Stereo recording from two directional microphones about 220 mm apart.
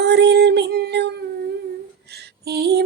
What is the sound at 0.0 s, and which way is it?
Child singing, 50° right (ahead or behind).